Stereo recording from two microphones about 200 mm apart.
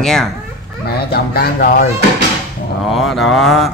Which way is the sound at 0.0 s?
Centre (ahead or behind).